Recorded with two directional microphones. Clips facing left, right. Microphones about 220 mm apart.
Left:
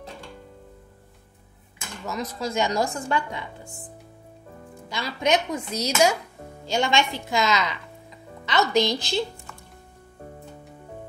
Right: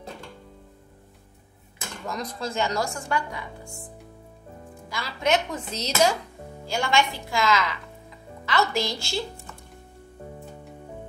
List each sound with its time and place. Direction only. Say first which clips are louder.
2.0 s speech: left 2 dB; 5° left (ahead or behind)
2.5 s a woman's voice: left 3 dB; 15° left (ahead or behind)
4.8 s a woman's voice: left 1 dB; 20° left (ahead or behind)